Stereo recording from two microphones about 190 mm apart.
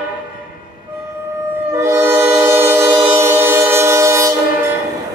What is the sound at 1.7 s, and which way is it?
Train, 15° right (ahead or behind).